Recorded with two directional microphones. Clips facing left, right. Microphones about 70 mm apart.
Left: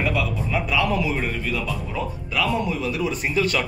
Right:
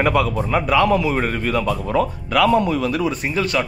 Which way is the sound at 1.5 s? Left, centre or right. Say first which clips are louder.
Right 7 dB; right.